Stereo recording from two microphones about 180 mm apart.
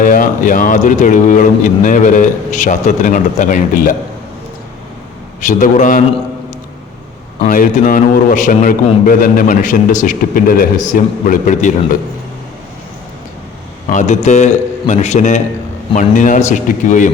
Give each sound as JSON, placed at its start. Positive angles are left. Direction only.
{"t": 0.0, "sound": "a man's voice", "side_deg": 50}
{"t": 5.4, "sound": "a man's voice", "side_deg": 45}
{"t": 7.4, "sound": "a man's voice", "side_deg": 50}
{"t": 13.9, "sound": "a man's voice", "side_deg": 40}